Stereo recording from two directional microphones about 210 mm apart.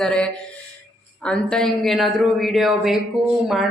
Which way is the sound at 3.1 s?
25° right (ahead or behind).